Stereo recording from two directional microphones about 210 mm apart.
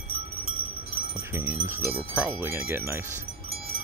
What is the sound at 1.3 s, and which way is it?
Speech, 10° right (ahead or behind).